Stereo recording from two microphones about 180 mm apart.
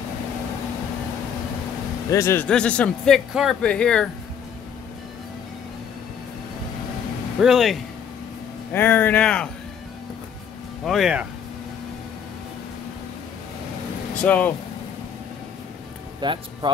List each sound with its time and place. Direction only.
2.0 s speech: 15° left (ahead or behind)
7.3 s speech: centre (ahead or behind)
8.7 s speech: 10° left (ahead or behind)
10.9 s speech: 5° right (ahead or behind)
14.2 s speech: 10° left (ahead or behind)
16.2 s speech: 25° right (ahead or behind)